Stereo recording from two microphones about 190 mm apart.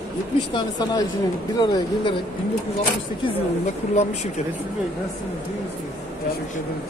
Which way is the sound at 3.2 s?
35° left (ahead or behind).